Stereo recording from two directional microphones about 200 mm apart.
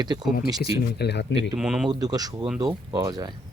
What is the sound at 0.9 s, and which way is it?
Speech, 55° left (ahead or behind).